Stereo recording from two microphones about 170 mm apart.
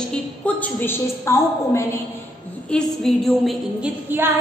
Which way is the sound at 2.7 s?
Centre (ahead or behind).